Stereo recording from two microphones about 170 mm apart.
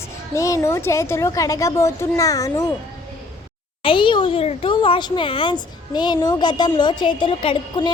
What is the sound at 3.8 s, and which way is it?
Speech, 30° left (ahead or behind).